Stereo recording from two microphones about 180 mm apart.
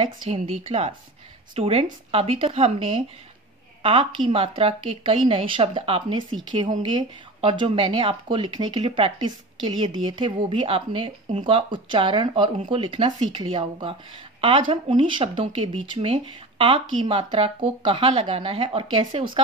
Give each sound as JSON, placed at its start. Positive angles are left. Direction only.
{"t": 0.0, "sound": "a woman's voice", "side_deg": -35}